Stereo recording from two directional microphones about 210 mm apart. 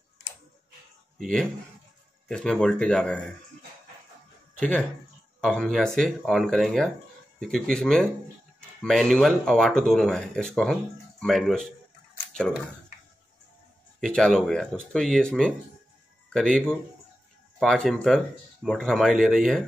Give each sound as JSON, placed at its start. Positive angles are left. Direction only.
{"t": 1.1, "sound": "speech", "side_deg": 0}
{"t": 4.6, "sound": "speech", "side_deg": 5}
{"t": 13.9, "sound": "speech", "side_deg": 5}